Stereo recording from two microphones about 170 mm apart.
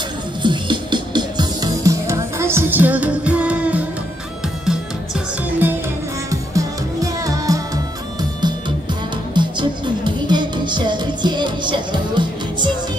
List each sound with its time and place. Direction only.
0.4 s music: 25° right (ahead or behind); by 3.8 s 10° right (ahead or behind)
5.6 s music: 10° right (ahead or behind)